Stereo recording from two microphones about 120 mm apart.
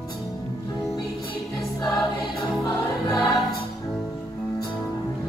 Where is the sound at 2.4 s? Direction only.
35° left (ahead or behind).